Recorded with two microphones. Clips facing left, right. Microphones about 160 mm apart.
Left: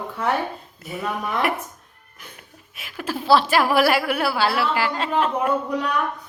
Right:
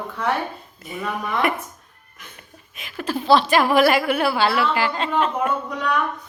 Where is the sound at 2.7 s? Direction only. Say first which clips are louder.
Right 2 dB; 5° left (ahead or behind).